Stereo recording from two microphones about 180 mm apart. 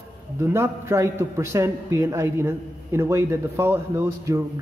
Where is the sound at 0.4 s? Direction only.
15° right (ahead or behind).